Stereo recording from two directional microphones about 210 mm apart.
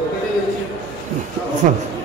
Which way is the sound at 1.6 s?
40° right (ahead or behind).